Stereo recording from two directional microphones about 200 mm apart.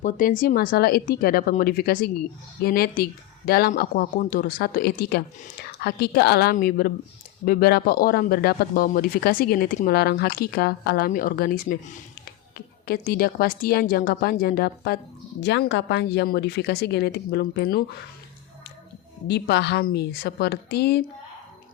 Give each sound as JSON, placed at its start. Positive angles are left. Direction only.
{"t": 0.0, "sound": "speech", "side_deg": 40}
{"t": 19.3, "sound": "speech", "side_deg": 55}